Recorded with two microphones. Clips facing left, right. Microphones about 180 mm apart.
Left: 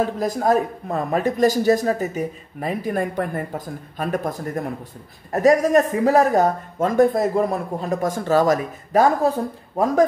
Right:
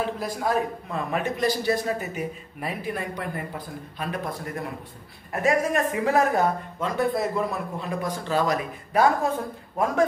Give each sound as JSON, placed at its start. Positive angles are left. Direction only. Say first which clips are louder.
{"t": 0.0, "sound": "a man's voice", "louder": "left 6 dB", "side_deg": 45}